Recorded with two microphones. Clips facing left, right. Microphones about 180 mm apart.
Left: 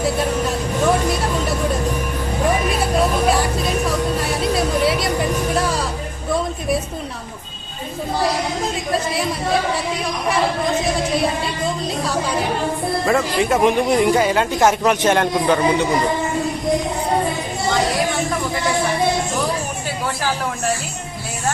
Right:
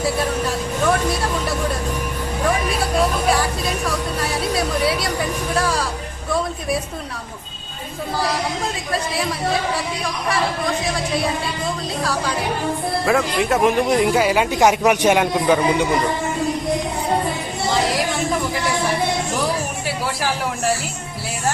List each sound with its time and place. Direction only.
13.1 s speech: centre (ahead or behind)